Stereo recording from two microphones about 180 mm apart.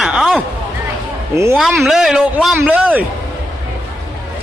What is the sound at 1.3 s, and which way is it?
Speech, 15° right (ahead or behind).